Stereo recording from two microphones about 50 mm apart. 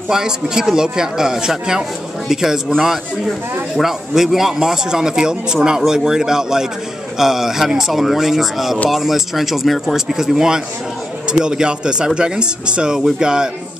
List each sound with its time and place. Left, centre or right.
0.1 s a man's voice: centre
3.7 s a man's voice: centre